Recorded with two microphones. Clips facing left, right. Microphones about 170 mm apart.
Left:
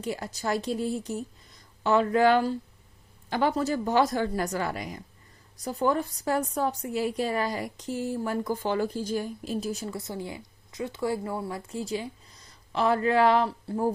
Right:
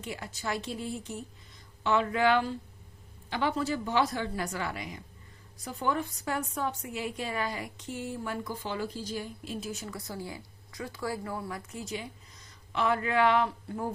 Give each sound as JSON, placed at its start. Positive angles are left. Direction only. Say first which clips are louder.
{"t": 0.0, "sound": "a woman's voice", "louder": "left 6 dB", "side_deg": 40}